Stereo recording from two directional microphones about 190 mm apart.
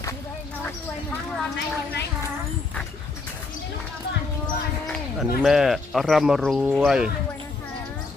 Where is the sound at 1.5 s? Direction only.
60° left (ahead or behind).